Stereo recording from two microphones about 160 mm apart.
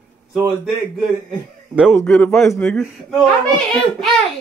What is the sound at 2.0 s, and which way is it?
A child's voice, 5° left (ahead or behind).